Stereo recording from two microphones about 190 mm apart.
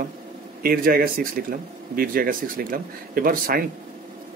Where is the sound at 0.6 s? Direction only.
50° right (ahead or behind).